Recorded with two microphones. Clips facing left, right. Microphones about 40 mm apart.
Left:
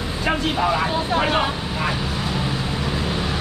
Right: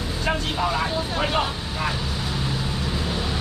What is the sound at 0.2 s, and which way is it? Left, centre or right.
Speech, centre.